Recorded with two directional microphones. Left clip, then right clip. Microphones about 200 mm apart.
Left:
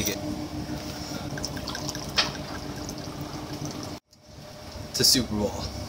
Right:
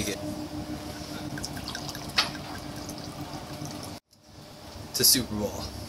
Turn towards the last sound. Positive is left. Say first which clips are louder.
# left 3 dB
turn(degrees=0)  # may be behind; listen again after turning